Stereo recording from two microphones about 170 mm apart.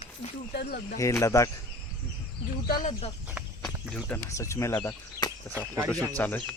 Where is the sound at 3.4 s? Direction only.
Centre (ahead or behind); by 4.7 s 15° left (ahead or behind).